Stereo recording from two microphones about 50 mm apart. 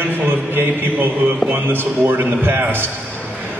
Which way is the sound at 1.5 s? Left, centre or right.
Right.